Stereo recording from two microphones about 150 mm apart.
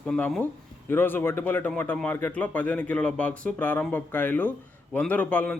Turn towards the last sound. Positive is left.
turn(degrees=10)  # may be behind; listen again after turning